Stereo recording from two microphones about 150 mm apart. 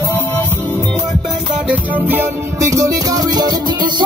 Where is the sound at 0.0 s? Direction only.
15° left (ahead or behind).